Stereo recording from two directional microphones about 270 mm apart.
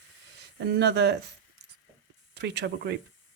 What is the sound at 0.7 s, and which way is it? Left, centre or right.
Speech, right.